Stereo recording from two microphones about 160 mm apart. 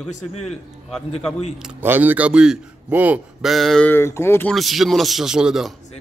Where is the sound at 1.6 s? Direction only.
10° right (ahead or behind).